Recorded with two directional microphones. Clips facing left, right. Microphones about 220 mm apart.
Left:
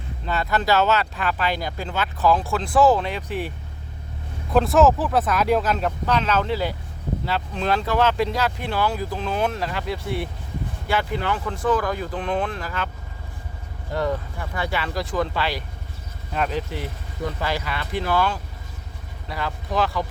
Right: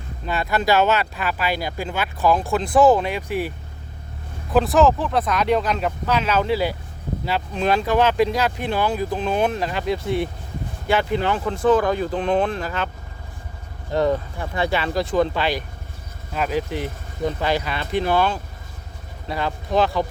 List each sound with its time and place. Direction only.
0.3 s speech: 10° right (ahead or behind)
4.5 s speech: centre (ahead or behind); by 12.9 s 25° right (ahead or behind)
14.5 s speech: 25° right (ahead or behind)
16.3 s speech: 5° right (ahead or behind); by 20.1 s 25° right (ahead or behind)